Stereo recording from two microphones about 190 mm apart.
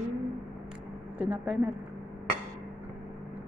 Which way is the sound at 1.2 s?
Centre (ahead or behind).